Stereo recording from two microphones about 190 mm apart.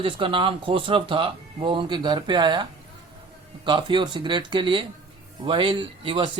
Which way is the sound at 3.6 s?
25° right (ahead or behind).